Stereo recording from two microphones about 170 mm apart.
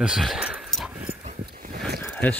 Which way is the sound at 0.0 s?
Centre (ahead or behind).